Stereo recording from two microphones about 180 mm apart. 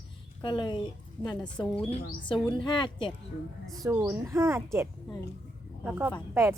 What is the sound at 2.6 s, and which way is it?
Speech, 25° left (ahead or behind).